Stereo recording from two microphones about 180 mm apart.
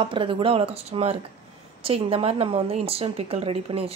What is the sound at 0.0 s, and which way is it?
A woman's voice, 30° right (ahead or behind).